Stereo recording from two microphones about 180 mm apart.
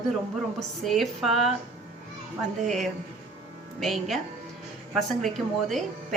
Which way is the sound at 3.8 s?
Centre (ahead or behind).